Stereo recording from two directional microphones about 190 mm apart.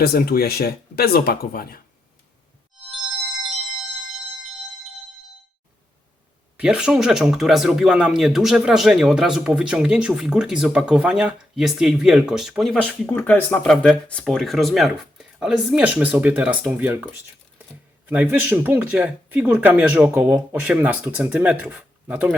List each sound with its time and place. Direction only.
0.0 s speech: 55° left (ahead or behind)
6.6 s speech: 5° right (ahead or behind)